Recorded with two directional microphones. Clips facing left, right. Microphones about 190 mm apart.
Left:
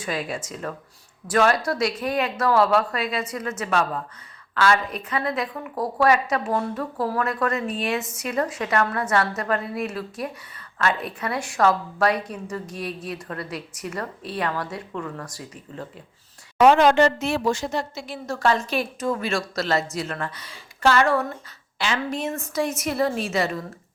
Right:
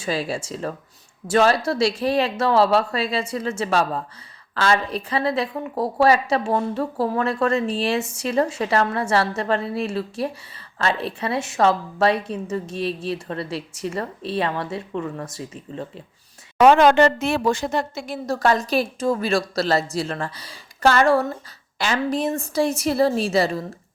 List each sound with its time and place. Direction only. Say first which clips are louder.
0.0 s a woman's voice: right 3 dB; 30° right (ahead or behind)
16.6 s a woman's voice: right 2 dB; 60° right (ahead or behind); by 23.6 s 30° right (ahead or behind)